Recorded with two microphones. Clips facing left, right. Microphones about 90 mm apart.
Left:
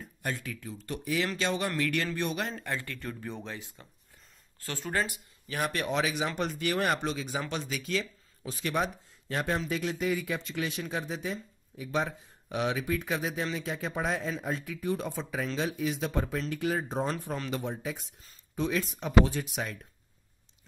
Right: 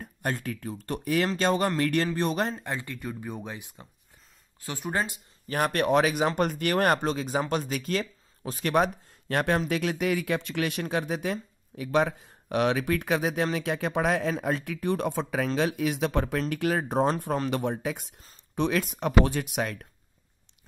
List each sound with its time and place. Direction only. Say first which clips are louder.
0.0 s speech: right 5 dB; 50° right (ahead or behind)
2.6 s speech: right 2 dB; 20° right (ahead or behind)
5.5 s speech: right 7 dB; 50° right (ahead or behind)